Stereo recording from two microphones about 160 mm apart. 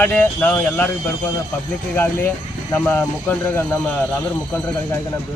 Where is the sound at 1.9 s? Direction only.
10° left (ahead or behind).